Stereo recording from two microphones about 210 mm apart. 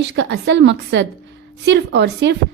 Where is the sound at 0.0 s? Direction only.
55° right (ahead or behind).